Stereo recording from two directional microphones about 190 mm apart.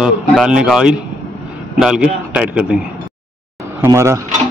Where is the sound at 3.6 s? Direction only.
15° right (ahead or behind).